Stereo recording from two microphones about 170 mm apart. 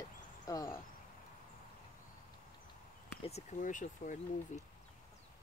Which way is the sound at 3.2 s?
40° left (ahead or behind).